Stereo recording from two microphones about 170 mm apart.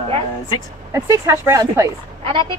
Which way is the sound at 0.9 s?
20° right (ahead or behind).